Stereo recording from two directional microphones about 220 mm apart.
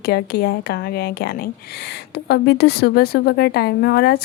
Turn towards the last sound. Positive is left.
turn(degrees=45)  # may be behind; listen again after turning